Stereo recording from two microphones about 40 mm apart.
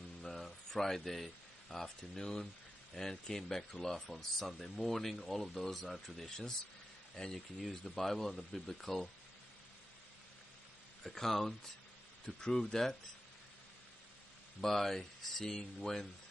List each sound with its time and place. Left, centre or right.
0.2 s a sound: centre
2.1 s speech: centre
11.1 s speech: centre
12.4 s speech: left
14.6 s speech: centre